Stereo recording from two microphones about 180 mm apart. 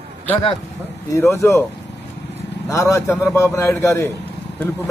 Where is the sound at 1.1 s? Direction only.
15° left (ahead or behind).